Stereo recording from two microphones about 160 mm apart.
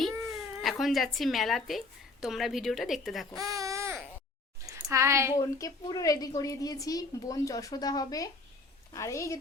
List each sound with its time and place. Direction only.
0.0 s cat: centre (ahead or behind)
2.2 s a woman's voice: centre (ahead or behind)
3.3 s baby cry: 20° right (ahead or behind)
4.6 s a sound: 20° right (ahead or behind)
5.4 s a woman's voice: 20° left (ahead or behind)